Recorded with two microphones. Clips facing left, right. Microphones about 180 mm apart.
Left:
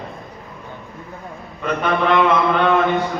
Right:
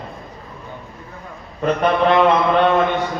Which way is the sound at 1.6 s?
35° right (ahead or behind).